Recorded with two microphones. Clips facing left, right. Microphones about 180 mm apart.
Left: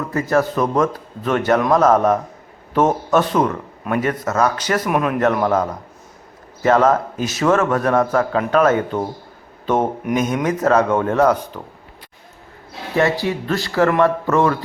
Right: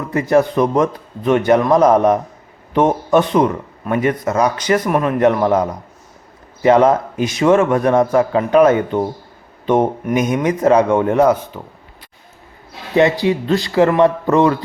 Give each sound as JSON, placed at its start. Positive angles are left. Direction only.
{"t": 0.1, "sound": "a man's voice", "side_deg": -15}
{"t": 4.8, "sound": "speech", "side_deg": 5}
{"t": 5.2, "sound": "a man's voice", "side_deg": -15}
{"t": 10.2, "sound": "a man's voice", "side_deg": -10}
{"t": 13.0, "sound": "a man's voice", "side_deg": -15}